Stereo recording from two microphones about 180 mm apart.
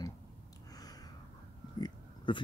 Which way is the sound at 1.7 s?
25° left (ahead or behind).